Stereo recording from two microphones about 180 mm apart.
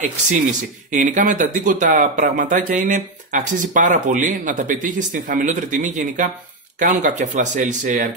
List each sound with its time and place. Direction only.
0.9 s speech: 45° right (ahead or behind)